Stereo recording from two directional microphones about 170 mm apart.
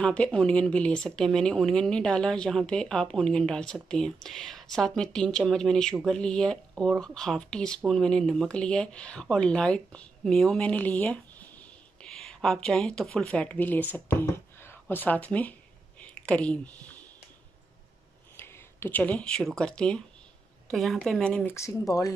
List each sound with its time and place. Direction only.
0.0 s speech: 5° left (ahead or behind)
16.0 s a sound: 5° left (ahead or behind)
18.3 s speech: 15° left (ahead or behind)
21.5 s speech: 20° left (ahead or behind)